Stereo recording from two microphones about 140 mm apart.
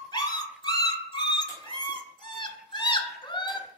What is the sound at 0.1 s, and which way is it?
Dog, 30° left (ahead or behind).